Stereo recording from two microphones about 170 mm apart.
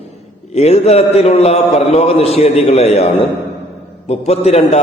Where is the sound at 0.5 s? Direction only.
40° left (ahead or behind).